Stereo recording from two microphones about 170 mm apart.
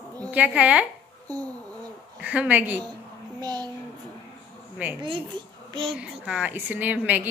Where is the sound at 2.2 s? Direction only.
10° right (ahead or behind).